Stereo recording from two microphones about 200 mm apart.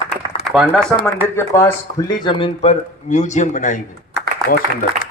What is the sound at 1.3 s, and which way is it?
A man's voice, 15° left (ahead or behind).